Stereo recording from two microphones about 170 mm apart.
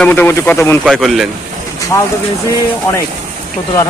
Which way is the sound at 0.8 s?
Centre (ahead or behind).